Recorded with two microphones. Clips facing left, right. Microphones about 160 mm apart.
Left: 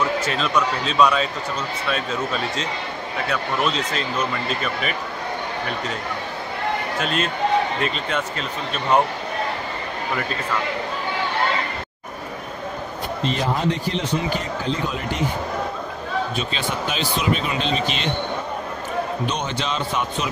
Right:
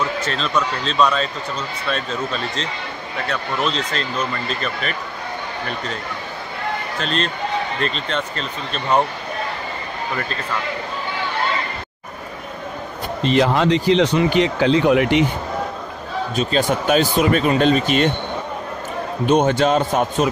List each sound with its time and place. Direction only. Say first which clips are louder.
0.2 s speech: even; 10° left (ahead or behind)
3.3 s speech: even; 5° left (ahead or behind)
7.0 s speech: even; 5° left (ahead or behind)
13.3 s speech: right 8 dB; 80° right
16.5 s speech: right 13 dB; 45° right (ahead or behind)
19.2 s speech: right 10 dB; 50° right (ahead or behind)